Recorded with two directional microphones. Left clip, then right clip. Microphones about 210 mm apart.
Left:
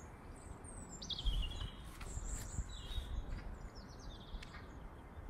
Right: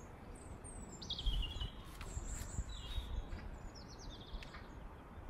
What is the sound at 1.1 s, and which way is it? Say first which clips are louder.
Bird: even; 45° right (ahead or behind).